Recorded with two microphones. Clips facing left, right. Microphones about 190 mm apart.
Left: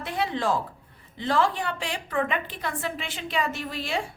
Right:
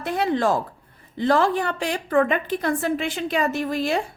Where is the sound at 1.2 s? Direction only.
45° right (ahead or behind).